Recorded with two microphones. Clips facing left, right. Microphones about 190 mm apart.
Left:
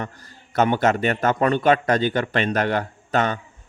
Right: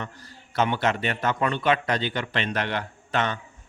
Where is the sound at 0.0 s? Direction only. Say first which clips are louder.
Left 4 dB; 45° left (ahead or behind).